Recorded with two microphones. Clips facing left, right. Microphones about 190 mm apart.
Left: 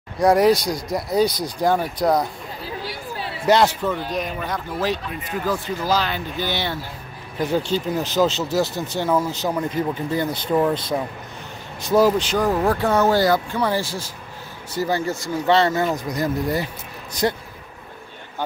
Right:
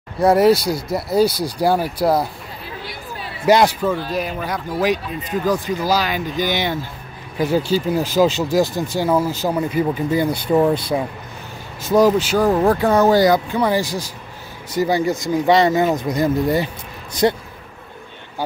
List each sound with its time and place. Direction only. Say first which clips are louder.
0.2 s speech: right 2 dB; 5° right (ahead or behind)
3.4 s speech: right 3 dB; 10° right (ahead or behind)
4.8 s speech: right 6 dB; 15° right (ahead or behind)